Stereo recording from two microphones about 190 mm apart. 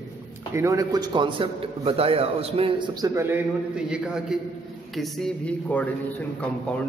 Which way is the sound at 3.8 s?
5° right (ahead or behind).